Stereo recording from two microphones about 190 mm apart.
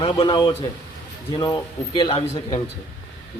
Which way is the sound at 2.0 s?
25° left (ahead or behind).